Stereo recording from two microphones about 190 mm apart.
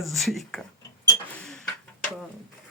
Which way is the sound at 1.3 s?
5° left (ahead or behind).